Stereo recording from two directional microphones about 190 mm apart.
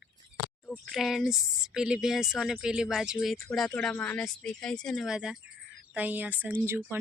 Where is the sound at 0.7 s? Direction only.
Centre (ahead or behind).